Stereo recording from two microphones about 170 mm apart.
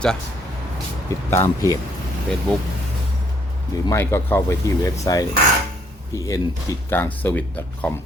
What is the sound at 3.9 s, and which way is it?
Speech, 15° left (ahead or behind).